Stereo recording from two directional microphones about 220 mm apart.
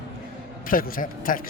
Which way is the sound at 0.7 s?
40° left (ahead or behind).